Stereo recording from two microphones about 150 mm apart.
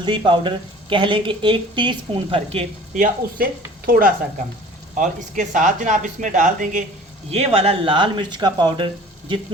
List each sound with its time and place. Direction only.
0.3 s speech: 35° right (ahead or behind)
2.9 s speech: 65° right (ahead or behind)
4.9 s speech: 60° right (ahead or behind)
7.3 s speech: 40° right (ahead or behind)